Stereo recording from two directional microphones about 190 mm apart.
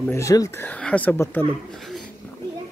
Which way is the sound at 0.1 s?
15° left (ahead or behind).